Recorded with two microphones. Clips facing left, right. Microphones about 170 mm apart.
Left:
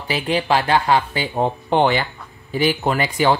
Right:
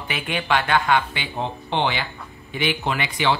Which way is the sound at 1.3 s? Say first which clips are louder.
Left 7 dB; 45° left (ahead or behind).